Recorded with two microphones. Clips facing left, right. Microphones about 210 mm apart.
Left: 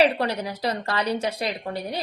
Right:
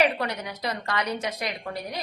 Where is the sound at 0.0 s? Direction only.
30° left (ahead or behind).